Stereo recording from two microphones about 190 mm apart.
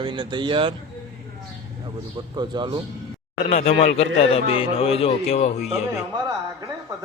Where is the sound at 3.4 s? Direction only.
35° left (ahead or behind).